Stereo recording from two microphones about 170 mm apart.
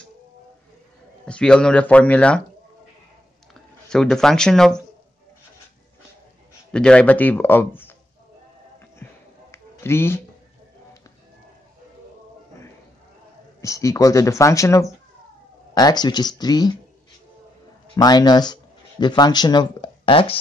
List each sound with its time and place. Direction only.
1.2 s speech: 5° left (ahead or behind)
3.5 s speech: 5° left (ahead or behind)
6.7 s speech: 5° left (ahead or behind)
9.5 s a sound: 15° left (ahead or behind)
13.6 s speech: 20° left (ahead or behind)
17.9 s speech: 25° left (ahead or behind)